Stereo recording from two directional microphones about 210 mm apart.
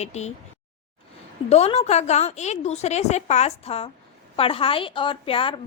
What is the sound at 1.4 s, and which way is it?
A woman's voice, 30° left (ahead or behind).